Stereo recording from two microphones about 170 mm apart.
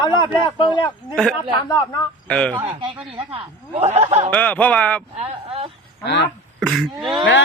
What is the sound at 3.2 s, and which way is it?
Speech, 35° right (ahead or behind).